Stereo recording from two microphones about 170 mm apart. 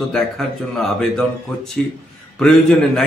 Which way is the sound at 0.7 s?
Centre (ahead or behind).